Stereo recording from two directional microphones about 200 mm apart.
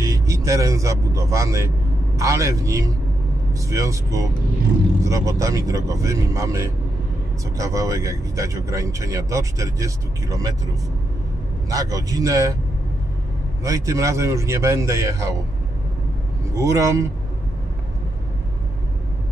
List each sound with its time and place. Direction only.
0.0 s a man's voice: 15° right (ahead or behind)
11.7 s speech: 15° right (ahead or behind)
13.7 s speech: 15° right (ahead or behind)
16.5 s speech: 15° right (ahead or behind)